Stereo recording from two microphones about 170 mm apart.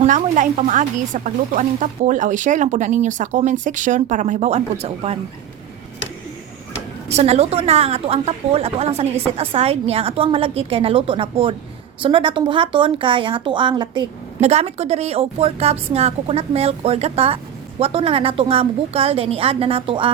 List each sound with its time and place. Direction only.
0.0 s speech: 50° right (ahead or behind)
7.1 s a woman's voice: 40° right (ahead or behind)
14.4 s a woman's voice: 40° right (ahead or behind)